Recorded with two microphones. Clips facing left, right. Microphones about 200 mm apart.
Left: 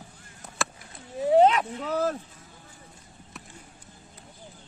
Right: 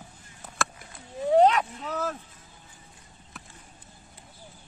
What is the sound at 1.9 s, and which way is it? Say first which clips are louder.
Speech: left 5 dB; 35° left (ahead or behind).